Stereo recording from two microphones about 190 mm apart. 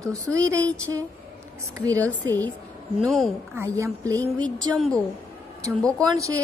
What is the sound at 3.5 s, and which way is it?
Speech, 15° right (ahead or behind).